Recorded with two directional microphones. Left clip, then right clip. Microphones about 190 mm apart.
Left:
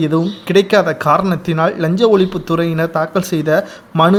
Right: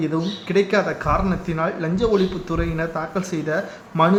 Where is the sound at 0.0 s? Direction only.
55° left (ahead or behind).